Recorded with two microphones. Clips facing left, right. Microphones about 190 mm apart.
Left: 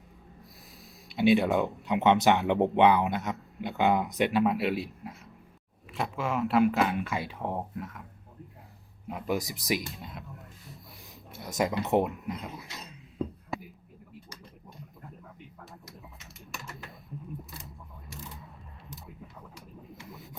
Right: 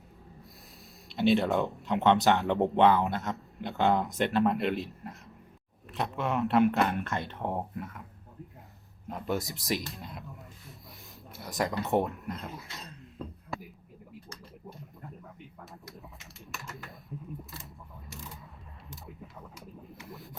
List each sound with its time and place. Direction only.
1.3 s speech: centre (ahead or behind)
2.3 s speech: 15° left (ahead or behind)
3.2 s speech: centre (ahead or behind)
9.0 s speech: 5° left (ahead or behind)
11.5 s speech: 20° left (ahead or behind)
12.1 s speech: centre (ahead or behind)
15.7 s typing: centre (ahead or behind)
19.9 s a sound: centre (ahead or behind)